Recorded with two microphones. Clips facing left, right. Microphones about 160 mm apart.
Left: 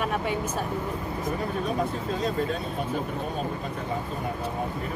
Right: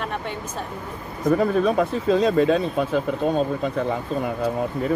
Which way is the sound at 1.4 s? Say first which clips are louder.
Right 7 dB; 90° right.